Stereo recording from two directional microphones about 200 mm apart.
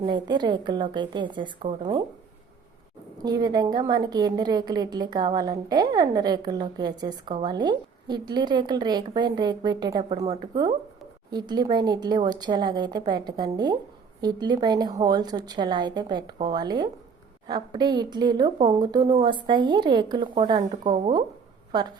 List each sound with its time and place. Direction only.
0.0 s a woman's voice: 20° right (ahead or behind)
3.2 s a woman's voice: 20° right (ahead or behind)
20.8 s speech: 40° right (ahead or behind)
21.7 s a woman's voice: 20° right (ahead or behind)